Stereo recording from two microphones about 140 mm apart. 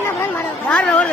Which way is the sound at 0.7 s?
10° left (ahead or behind).